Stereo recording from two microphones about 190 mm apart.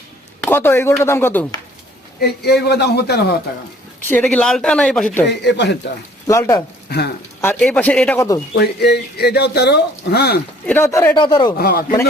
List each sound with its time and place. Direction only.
0.4 s speech: 10° left (ahead or behind)
2.2 s speech: 60° left (ahead or behind)
4.1 s speech: 5° left (ahead or behind)
5.3 s speech: 65° left (ahead or behind)
6.2 s speech: 15° left (ahead or behind)
8.5 s speech: 60° left (ahead or behind)
10.7 s speech: 10° left (ahead or behind)
11.1 s speech: 25° left (ahead or behind)
11.5 s speech: 55° left (ahead or behind)